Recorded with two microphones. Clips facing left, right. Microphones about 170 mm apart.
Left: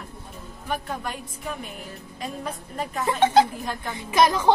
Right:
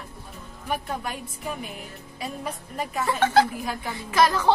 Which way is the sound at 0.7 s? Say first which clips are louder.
Even; 5° right (ahead or behind).